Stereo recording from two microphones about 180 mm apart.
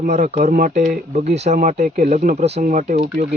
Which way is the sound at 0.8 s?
45° right (ahead or behind).